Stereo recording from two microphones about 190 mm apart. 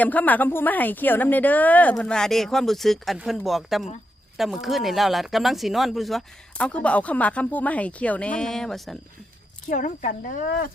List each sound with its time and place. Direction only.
0.0 s a woman's voice: 10° left (ahead or behind)
9.6 s speech: 45° left (ahead or behind)